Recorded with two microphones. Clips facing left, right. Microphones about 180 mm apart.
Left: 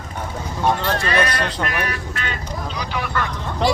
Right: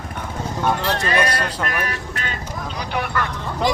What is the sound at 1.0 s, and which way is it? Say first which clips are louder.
Speech: even; 40° right (ahead or behind).